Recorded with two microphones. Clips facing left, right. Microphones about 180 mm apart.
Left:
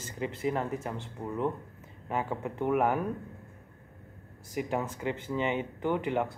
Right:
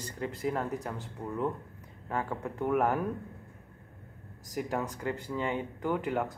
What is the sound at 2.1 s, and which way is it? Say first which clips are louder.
Speech: left 1 dB; 5° left (ahead or behind).